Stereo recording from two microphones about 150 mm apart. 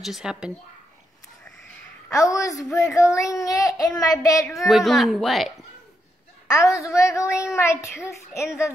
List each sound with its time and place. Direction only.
0.0 s a woman's voice: 5° right (ahead or behind)
2.0 s speech: 20° left (ahead or behind)
4.6 s a woman's voice: centre (ahead or behind)
6.4 s speech: 20° left (ahead or behind)